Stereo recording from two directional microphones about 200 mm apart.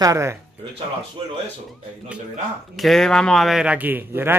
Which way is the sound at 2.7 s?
Centre (ahead or behind).